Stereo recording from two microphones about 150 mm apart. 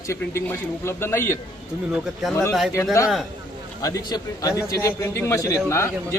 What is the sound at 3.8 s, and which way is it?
Speech, 25° left (ahead or behind).